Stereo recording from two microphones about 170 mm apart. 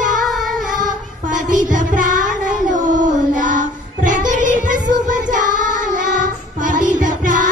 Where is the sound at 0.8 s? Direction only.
50° right (ahead or behind).